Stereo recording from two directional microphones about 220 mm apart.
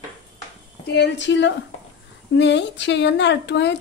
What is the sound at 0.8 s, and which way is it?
A woman's voice, 50° left (ahead or behind).